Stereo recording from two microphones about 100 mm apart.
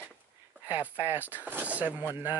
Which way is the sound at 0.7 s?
20° right (ahead or behind).